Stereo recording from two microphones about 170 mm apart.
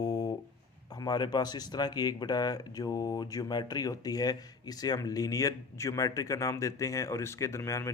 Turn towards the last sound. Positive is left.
turn(degrees=15)  # may be behind; listen again after turning